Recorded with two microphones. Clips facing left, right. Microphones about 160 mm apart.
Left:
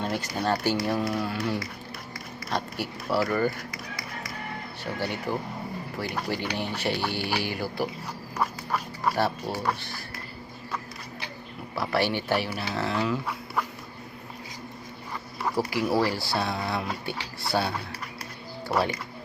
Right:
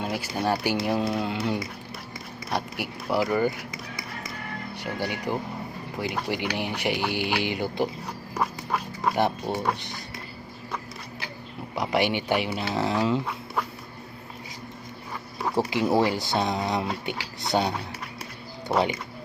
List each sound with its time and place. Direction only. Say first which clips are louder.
0.0 s speech: right 1 dB; 10° right (ahead or behind)
4.8 s speech: right 1 dB; 15° right (ahead or behind)
9.1 s speech: right 5 dB; 20° right (ahead or behind)
11.7 s speech: right 2 dB; 20° right (ahead or behind)
15.5 s speech: right 3 dB; 25° right (ahead or behind)